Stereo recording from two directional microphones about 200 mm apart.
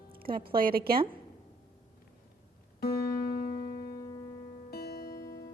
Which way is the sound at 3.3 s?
35° left (ahead or behind).